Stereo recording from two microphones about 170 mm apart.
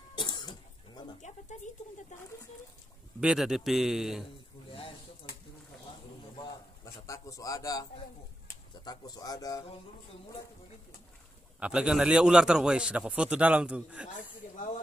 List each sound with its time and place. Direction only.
0.1 s cough: 25° left (ahead or behind)
3.2 s a man's voice: 5° right (ahead or behind)
6.3 s a man's voice: 20° left (ahead or behind)
11.6 s a man's voice: 5° right (ahead or behind)